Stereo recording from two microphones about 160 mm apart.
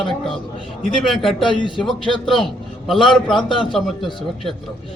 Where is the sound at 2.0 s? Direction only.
35° left (ahead or behind).